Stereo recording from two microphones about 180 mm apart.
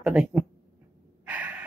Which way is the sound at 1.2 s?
10° right (ahead or behind).